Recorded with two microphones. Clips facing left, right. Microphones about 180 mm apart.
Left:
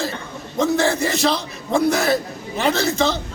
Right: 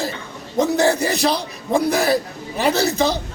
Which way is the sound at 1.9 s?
35° right (ahead or behind).